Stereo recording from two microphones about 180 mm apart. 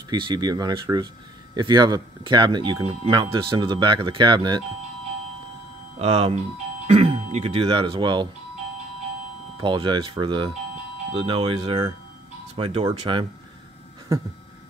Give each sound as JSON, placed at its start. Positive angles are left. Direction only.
{"t": 0.1, "sound": "speech", "side_deg": -25}
{"t": 5.9, "sound": "speech", "side_deg": -35}
{"t": 9.6, "sound": "speech", "side_deg": -25}